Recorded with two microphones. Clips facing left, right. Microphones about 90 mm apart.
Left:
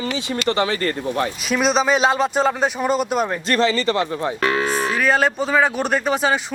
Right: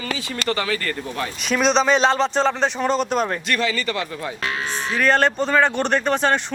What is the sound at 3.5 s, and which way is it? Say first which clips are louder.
Speech: left 4 dB; 30° left (ahead or behind).